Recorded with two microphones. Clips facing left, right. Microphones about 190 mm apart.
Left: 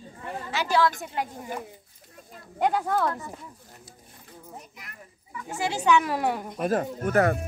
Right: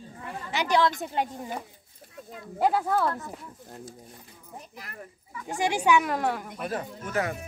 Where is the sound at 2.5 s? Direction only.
5° right (ahead or behind).